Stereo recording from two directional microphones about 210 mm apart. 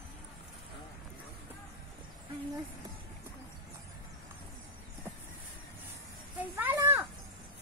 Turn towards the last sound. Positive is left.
turn(degrees=-10)  # may be behind; listen again after turning